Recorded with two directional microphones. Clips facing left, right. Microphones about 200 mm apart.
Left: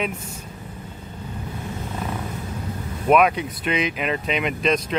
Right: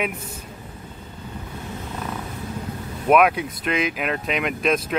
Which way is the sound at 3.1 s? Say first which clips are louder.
Even; 5° right (ahead or behind).